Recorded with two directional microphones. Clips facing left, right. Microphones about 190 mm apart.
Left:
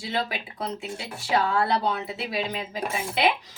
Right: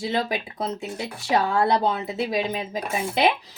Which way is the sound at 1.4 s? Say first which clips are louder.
Right 3 dB; 40° right (ahead or behind).